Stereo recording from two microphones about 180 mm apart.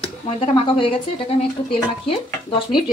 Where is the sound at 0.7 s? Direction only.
30° left (ahead or behind).